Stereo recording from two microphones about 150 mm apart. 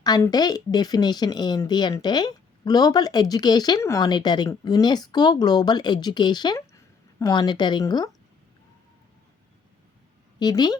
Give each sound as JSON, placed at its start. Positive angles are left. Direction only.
{"t": 0.0, "sound": "speech", "side_deg": 25}
{"t": 10.4, "sound": "speech", "side_deg": 25}